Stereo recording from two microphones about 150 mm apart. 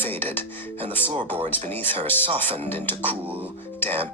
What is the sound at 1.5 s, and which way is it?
Speech, 10° left (ahead or behind).